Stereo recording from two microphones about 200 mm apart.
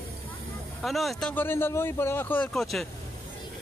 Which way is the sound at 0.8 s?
Centre (ahead or behind).